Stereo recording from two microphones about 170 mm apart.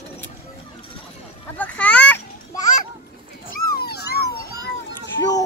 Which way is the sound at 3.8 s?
70° left (ahead or behind).